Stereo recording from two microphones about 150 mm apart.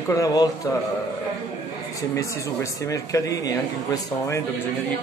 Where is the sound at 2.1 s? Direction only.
20° left (ahead or behind).